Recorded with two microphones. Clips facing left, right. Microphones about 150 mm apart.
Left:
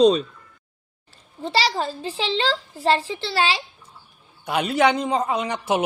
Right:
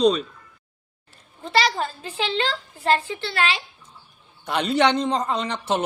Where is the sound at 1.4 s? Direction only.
30° left (ahead or behind).